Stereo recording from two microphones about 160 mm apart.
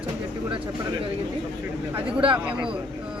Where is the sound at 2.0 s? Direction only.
35° right (ahead or behind).